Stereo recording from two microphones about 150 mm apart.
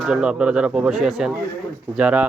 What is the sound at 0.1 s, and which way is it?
A man's voice, 5° right (ahead or behind).